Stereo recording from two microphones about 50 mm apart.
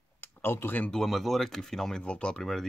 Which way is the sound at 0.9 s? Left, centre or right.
Centre.